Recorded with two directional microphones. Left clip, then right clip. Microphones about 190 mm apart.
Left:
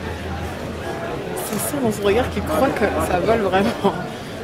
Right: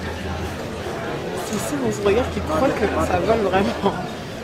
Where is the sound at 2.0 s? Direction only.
45° left (ahead or behind).